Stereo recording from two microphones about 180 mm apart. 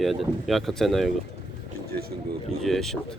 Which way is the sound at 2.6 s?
Centre (ahead or behind).